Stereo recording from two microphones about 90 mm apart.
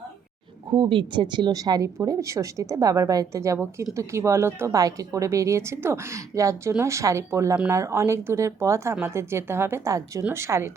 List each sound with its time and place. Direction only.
0.7 s a woman's voice: 65° right (ahead or behind); by 10.7 s 30° right (ahead or behind)